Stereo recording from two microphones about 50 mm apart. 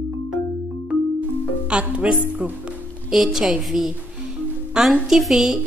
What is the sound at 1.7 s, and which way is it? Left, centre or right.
Speech, right.